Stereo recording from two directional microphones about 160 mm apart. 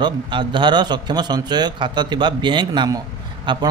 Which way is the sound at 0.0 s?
30° right (ahead or behind).